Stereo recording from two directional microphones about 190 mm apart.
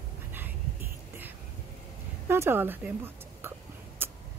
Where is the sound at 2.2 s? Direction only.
10° right (ahead or behind).